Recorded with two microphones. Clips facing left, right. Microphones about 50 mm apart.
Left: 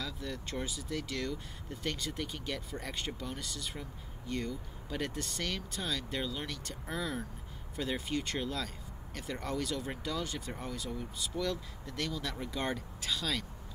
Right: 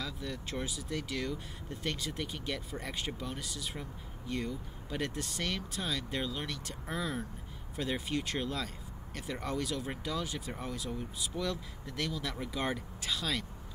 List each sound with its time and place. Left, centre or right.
0.0 s speech: centre
6.9 s speech: centre
7.7 s speech: centre